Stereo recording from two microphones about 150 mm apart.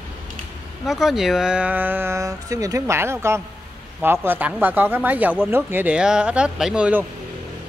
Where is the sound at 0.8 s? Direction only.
Centre (ahead or behind).